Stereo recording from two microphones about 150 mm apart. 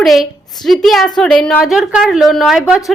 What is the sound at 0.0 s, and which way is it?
Speech, centre (ahead or behind).